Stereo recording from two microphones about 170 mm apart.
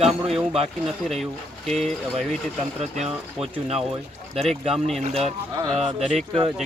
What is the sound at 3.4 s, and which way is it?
Speech, 35° right (ahead or behind).